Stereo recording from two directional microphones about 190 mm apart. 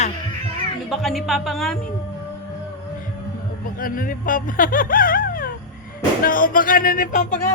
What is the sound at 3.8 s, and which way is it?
Speech, 45° left (ahead or behind).